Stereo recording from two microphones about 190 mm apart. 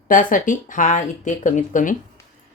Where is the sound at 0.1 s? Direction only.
45° left (ahead or behind).